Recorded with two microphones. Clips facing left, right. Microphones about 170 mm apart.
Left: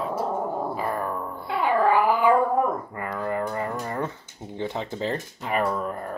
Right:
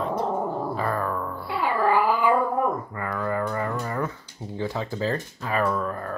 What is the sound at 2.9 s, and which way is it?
Speech, 25° left (ahead or behind).